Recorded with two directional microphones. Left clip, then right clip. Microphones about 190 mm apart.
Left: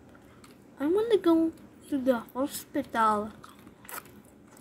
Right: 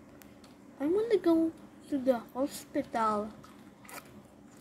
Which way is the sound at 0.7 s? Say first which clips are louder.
Left 3 dB; 10° left (ahead or behind).